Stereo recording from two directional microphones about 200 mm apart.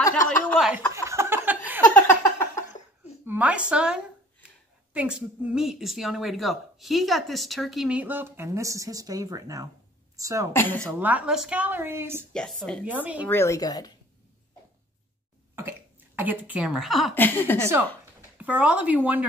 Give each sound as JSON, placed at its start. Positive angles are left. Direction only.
{"t": 0.5, "sound": "a woman's voice", "side_deg": 5}
{"t": 0.9, "sound": "a sound", "side_deg": -15}
{"t": 2.0, "sound": "a sound", "side_deg": 10}
{"t": 3.3, "sound": "a woman's voice", "side_deg": -5}
{"t": 10.5, "sound": "speech", "side_deg": 10}
{"t": 10.8, "sound": "a woman's voice", "side_deg": -10}
{"t": 12.3, "sound": "a woman's voice", "side_deg": 0}
{"t": 12.8, "sound": "a woman's voice", "side_deg": -10}
{"t": 13.3, "sound": "speech", "side_deg": 15}
{"t": 16.2, "sound": "a woman's voice", "side_deg": -10}
{"t": 18.4, "sound": "a woman's voice", "side_deg": -5}